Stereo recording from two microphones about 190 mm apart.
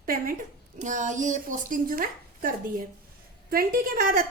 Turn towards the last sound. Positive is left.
turn(degrees=-45)  # may be behind; listen again after turning